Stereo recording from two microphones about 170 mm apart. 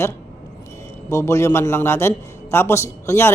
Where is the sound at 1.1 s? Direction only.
15° left (ahead or behind).